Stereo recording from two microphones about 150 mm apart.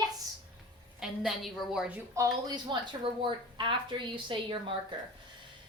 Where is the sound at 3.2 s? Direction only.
35° right (ahead or behind).